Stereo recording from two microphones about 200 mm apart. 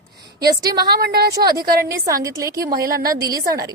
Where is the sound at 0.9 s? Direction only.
50° right (ahead or behind).